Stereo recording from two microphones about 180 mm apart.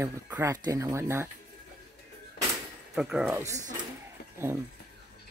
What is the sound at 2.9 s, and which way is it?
Speech, 5° right (ahead or behind).